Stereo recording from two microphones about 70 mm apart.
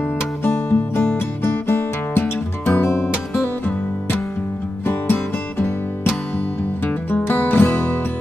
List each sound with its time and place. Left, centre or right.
0.2 s music: left